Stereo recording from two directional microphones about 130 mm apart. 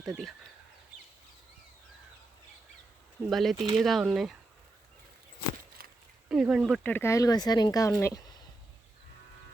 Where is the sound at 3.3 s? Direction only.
Centre (ahead or behind).